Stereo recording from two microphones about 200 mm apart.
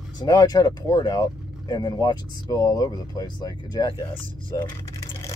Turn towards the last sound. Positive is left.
turn(degrees=20)  # may be behind; listen again after turning